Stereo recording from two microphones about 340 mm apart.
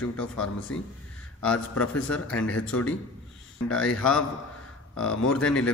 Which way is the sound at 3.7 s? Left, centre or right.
Centre.